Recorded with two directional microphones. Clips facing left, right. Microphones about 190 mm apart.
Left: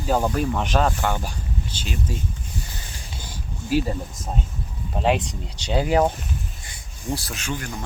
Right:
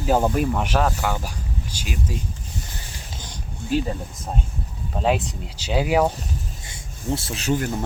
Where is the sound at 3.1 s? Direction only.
5° left (ahead or behind).